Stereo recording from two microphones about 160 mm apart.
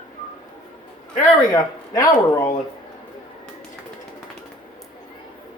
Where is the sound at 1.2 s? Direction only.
25° left (ahead or behind).